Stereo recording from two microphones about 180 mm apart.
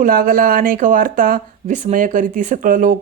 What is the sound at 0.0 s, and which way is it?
Speech, 50° right (ahead or behind).